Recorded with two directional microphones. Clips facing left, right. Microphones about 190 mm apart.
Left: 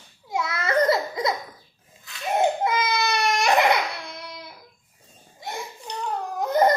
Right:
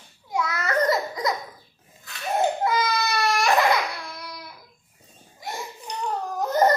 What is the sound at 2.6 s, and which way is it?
Baby cry, 20° left (ahead or behind).